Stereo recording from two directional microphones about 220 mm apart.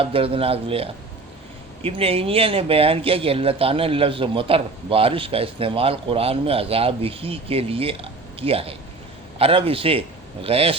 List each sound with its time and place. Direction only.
0.0 s a man's voice: 25° right (ahead or behind)